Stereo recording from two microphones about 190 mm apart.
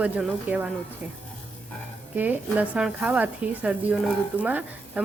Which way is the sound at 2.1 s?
10° right (ahead or behind).